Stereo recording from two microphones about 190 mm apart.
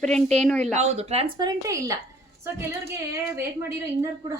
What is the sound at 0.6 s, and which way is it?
A woman's voice, 35° right (ahead or behind).